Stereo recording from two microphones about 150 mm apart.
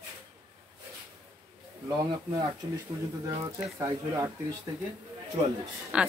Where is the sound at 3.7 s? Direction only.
20° right (ahead or behind).